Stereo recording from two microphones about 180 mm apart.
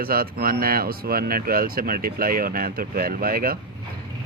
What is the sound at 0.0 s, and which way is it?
A man's voice, 55° right (ahead or behind).